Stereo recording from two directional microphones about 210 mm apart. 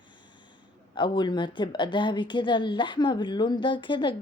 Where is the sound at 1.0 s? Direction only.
20° left (ahead or behind).